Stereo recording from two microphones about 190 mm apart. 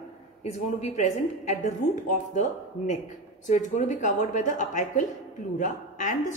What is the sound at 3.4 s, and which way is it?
A woman's voice, 40° left (ahead or behind).